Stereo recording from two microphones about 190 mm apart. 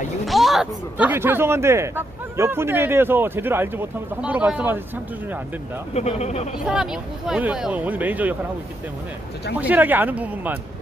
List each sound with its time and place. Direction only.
0.3 s speech: centre (ahead or behind)
5.9 s speech: 35° left (ahead or behind)
6.6 s speech: 5° right (ahead or behind)
9.6 s speech: 10° right (ahead or behind)